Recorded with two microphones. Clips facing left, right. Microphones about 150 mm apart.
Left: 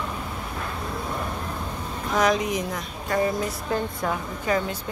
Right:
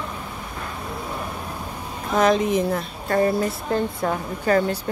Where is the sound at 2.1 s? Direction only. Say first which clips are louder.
Right 4 dB; 25° right (ahead or behind).